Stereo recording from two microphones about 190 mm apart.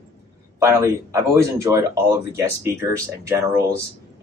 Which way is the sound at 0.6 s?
15° right (ahead or behind).